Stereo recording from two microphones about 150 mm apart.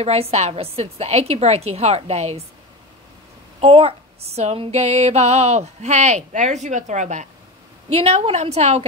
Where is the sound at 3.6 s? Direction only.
40° right (ahead or behind).